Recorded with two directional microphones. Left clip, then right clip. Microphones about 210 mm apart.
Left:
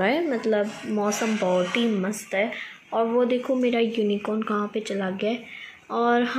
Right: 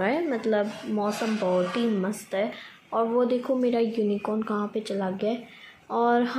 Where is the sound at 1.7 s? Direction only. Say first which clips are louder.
Left 2 dB; centre (ahead or behind).